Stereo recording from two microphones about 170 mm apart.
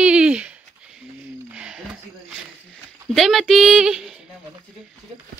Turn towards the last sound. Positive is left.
turn(degrees=-5)  # may be behind; listen again after turning